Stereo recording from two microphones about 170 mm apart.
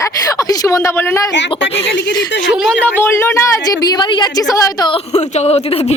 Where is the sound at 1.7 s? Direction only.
90° left.